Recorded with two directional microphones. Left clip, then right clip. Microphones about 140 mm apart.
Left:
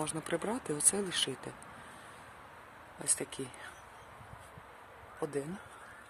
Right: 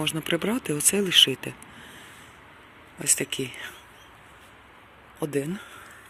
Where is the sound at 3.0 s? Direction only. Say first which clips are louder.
Right 11 dB; 15° right (ahead or behind).